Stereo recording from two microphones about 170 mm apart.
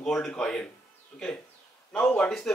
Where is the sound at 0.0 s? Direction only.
5° left (ahead or behind).